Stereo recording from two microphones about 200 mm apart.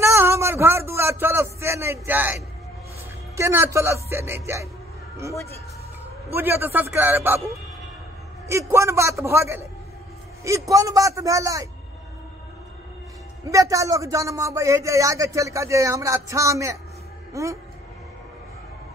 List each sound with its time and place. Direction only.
0.0 s a sound: 15° right (ahead or behind)
3.3 s speech: 15° right (ahead or behind)
6.3 s speech: 10° right (ahead or behind)
8.5 s speech: 15° right (ahead or behind)
13.5 s speech: 15° right (ahead or behind)